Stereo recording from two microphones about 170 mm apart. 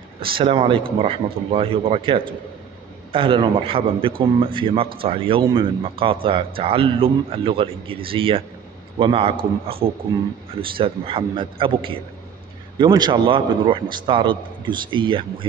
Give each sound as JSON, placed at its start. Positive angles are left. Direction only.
{"t": 0.2, "sound": "a man's voice", "side_deg": -30}